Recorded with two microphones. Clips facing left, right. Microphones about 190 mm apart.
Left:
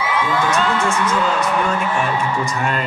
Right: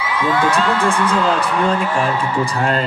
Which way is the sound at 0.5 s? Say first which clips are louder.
Right 2 dB; 30° right (ahead or behind).